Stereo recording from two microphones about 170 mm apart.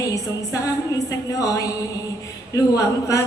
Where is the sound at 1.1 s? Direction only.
20° left (ahead or behind).